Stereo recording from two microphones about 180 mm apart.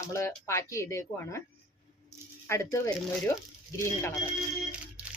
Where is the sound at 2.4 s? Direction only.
15° left (ahead or behind).